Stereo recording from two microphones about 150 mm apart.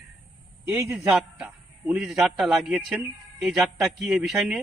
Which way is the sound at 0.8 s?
20° right (ahead or behind).